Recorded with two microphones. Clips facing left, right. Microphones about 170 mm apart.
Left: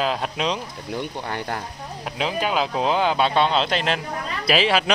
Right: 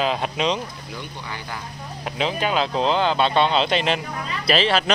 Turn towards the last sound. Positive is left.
turn(degrees=5)  # may be behind; listen again after turning